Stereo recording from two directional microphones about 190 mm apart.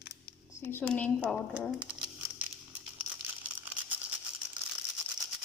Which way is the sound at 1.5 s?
Centre (ahead or behind).